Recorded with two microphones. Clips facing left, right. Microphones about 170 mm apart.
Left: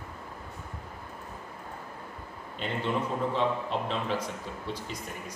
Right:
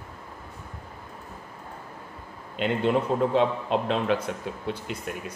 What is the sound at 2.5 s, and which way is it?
A man's voice, 65° right (ahead or behind).